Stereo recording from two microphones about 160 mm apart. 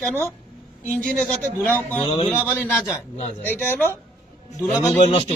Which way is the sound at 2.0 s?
35° left (ahead or behind).